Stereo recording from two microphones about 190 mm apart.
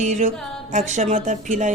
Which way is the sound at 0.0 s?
40° right (ahead or behind).